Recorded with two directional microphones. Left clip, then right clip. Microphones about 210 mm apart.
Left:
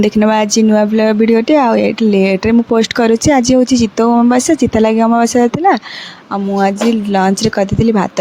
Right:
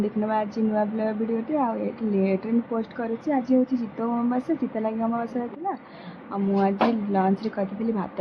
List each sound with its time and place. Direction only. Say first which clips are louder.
0.2 s speech: left 13 dB; 55° left (ahead or behind)
7.1 s speech: left 12 dB; 45° left (ahead or behind)